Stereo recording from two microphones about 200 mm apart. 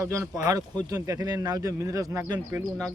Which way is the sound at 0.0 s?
15° right (ahead or behind).